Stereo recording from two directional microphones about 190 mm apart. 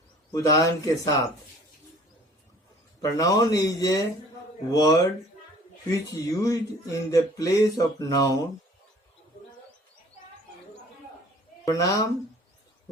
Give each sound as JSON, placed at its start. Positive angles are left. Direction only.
{"t": 0.3, "sound": "speech", "side_deg": 15}
{"t": 3.0, "sound": "speech", "side_deg": 15}
{"t": 11.6, "sound": "a woman's voice", "side_deg": 15}